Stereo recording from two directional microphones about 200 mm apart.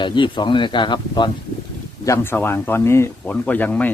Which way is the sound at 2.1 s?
10° left (ahead or behind).